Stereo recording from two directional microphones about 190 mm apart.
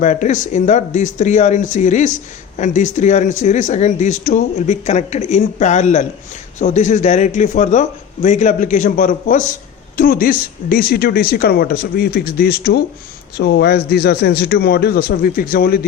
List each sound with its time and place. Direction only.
0.0 s a man's voice: 40° left (ahead or behind)